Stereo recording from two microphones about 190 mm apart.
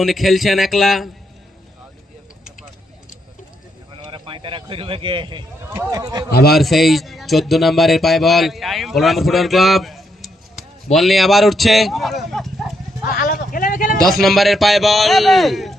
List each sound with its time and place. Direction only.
0.0 s speech: centre (ahead or behind)
4.1 s speech: 25° right (ahead or behind)
5.7 s speech: 15° right (ahead or behind)
6.5 s speech: centre (ahead or behind)
13.1 s a sound: 50° left (ahead or behind)
14.0 s speech: centre (ahead or behind)